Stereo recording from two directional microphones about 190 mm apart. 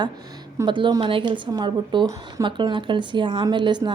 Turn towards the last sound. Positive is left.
turn(degrees=-25)  # may be behind; listen again after turning